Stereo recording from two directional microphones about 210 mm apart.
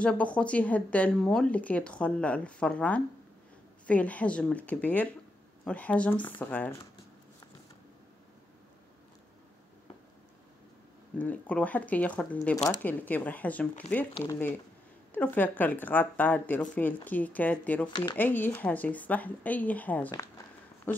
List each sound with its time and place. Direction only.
0.0 s a woman's voice: 5° left (ahead or behind)
11.1 s a woman's voice: 5° left (ahead or behind)